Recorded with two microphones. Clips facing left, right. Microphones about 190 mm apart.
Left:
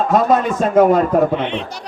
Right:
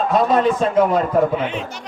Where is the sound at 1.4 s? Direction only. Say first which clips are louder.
Left 2 dB; 5° right (ahead or behind).